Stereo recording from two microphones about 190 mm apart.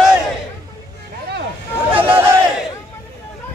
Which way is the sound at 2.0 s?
10° right (ahead or behind).